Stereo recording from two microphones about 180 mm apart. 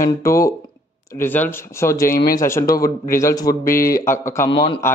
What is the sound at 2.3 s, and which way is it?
A man's voice, 15° left (ahead or behind).